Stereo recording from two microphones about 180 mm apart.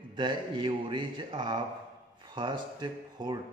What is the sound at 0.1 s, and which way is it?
Speech, 25° right (ahead or behind).